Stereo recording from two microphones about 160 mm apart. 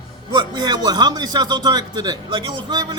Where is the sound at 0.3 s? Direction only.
25° right (ahead or behind).